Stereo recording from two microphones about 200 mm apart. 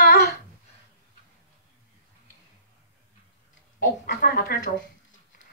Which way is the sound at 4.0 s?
50° left (ahead or behind).